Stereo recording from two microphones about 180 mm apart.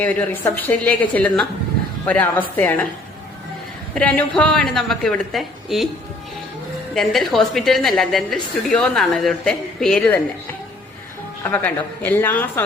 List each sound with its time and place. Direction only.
0.0 s a woman's voice: 10° left (ahead or behind)
3.9 s a woman's voice: 5° left (ahead or behind)
6.9 s a woman's voice: centre (ahead or behind)
11.4 s a woman's voice: 10° left (ahead or behind)